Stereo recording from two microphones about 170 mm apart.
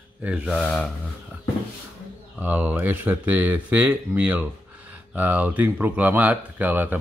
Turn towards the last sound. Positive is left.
turn(degrees=-10)  # may be behind; listen again after turning